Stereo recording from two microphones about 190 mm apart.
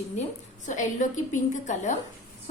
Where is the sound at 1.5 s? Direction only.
40° left (ahead or behind).